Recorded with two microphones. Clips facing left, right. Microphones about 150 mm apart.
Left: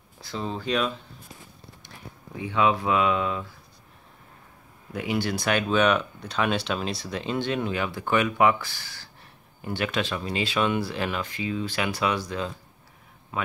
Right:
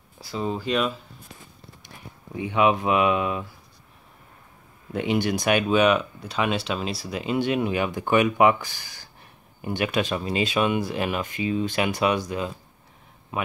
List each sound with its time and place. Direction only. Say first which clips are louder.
0.2 s speech: right 4 dB; 10° right (ahead or behind)
2.4 s speech: right 2 dB; 15° right (ahead or behind)
4.9 s a man's voice: right 4 dB; 20° right (ahead or behind)